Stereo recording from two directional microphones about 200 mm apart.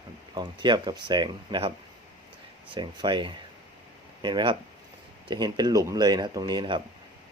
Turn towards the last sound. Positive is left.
turn(degrees=-20)  # may be behind; listen again after turning